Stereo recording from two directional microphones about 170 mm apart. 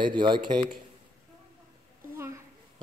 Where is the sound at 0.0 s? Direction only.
25° right (ahead or behind).